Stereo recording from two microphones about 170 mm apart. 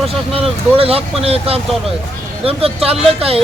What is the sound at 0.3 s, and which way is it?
A man's voice, 35° right (ahead or behind).